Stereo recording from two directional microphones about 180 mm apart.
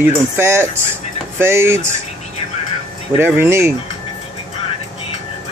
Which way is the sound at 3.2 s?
15° right (ahead or behind).